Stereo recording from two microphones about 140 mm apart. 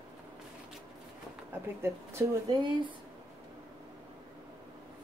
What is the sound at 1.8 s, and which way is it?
Speech, 20° right (ahead or behind).